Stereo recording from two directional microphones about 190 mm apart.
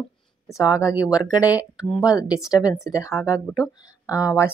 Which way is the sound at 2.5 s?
20° left (ahead or behind).